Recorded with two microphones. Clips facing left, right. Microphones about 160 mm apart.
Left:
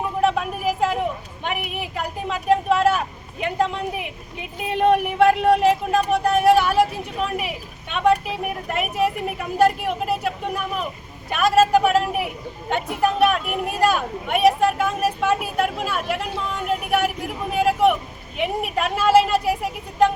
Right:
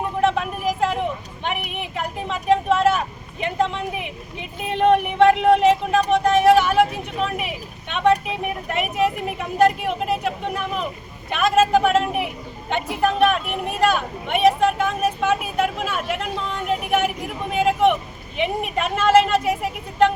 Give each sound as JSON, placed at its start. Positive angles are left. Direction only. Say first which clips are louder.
{"t": 0.2, "sound": "vehicle", "louder": "even", "side_deg": 5}
{"t": 1.5, "sound": "a woman's voice", "louder": "even", "side_deg": 5}